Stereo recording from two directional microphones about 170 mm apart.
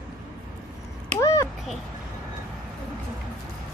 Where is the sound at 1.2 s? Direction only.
20° left (ahead or behind).